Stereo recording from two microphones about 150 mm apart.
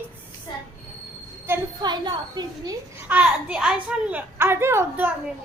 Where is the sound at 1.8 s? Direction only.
30° right (ahead or behind).